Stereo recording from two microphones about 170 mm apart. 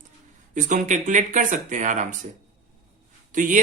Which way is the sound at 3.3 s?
50° right (ahead or behind).